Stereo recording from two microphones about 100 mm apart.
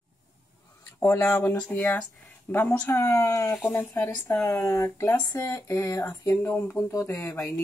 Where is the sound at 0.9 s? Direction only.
25° left (ahead or behind).